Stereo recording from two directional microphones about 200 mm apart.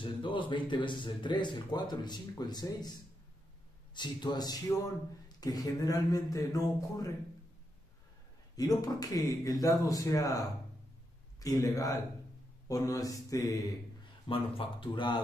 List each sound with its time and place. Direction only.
0.0 s speech: 25° left (ahead or behind)
8.5 s speech: 20° left (ahead or behind)